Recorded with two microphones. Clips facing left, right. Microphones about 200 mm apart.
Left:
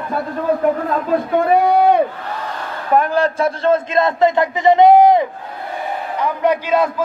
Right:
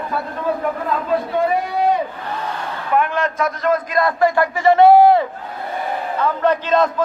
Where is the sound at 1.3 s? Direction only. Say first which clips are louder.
Left 9 dB; 60° left (ahead or behind).